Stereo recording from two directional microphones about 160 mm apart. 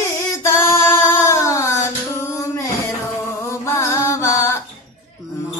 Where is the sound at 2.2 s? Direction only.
20° left (ahead or behind).